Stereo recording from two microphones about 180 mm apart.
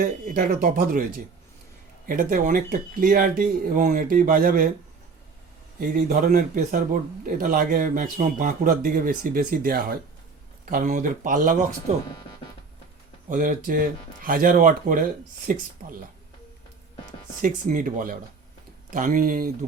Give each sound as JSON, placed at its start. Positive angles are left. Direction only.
{"t": 0.0, "sound": "a man's voice", "side_deg": -50}
{"t": 5.8, "sound": "a man's voice", "side_deg": -50}
{"t": 10.7, "sound": "a man's voice", "side_deg": -45}
{"t": 13.3, "sound": "a man's voice", "side_deg": -45}
{"t": 17.4, "sound": "a man's voice", "side_deg": -50}